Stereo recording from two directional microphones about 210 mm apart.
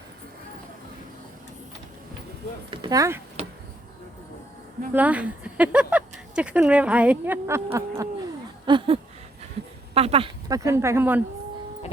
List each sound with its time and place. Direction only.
2.6 s speech: 20° right (ahead or behind)
4.9 s speech: 5° right (ahead or behind)